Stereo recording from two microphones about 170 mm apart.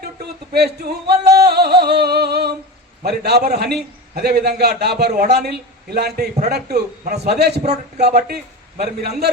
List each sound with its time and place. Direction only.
0.5 s music: 70° right (ahead or behind)
3.0 s a man's voice: 70° right (ahead or behind)